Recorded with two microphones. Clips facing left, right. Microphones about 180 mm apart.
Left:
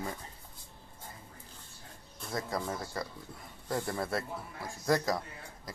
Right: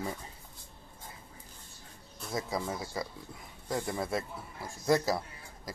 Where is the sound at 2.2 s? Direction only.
Centre (ahead or behind).